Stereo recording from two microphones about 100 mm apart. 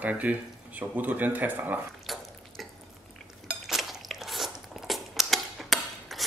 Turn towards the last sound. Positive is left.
turn(degrees=0)  # may be behind; listen again after turning